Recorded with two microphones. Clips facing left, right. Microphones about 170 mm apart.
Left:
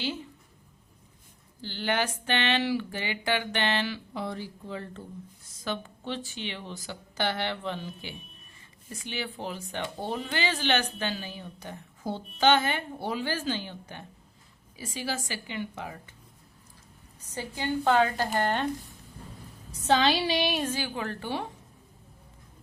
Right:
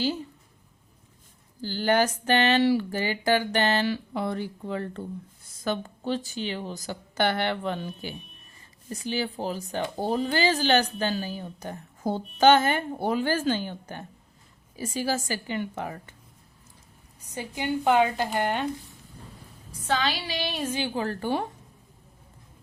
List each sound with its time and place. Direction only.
0.0 s speech: 40° right (ahead or behind)
1.6 s speech: 40° right (ahead or behind)
4.1 s speech: 55° right (ahead or behind)
5.6 s a woman's voice: 40° right (ahead or behind)
8.9 s a woman's voice: 35° right (ahead or behind)
17.2 s a woman's voice: 15° right (ahead or behind)
19.9 s female singing: 25° left (ahead or behind)
20.7 s speech: 30° right (ahead or behind); by 21.4 s 45° right (ahead or behind)